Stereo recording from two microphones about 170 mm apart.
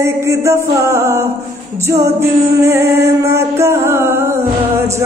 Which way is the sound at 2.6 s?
15° right (ahead or behind).